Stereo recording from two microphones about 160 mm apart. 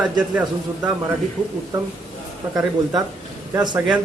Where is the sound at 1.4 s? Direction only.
25° right (ahead or behind).